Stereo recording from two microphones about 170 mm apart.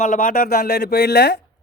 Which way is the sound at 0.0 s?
50° left (ahead or behind).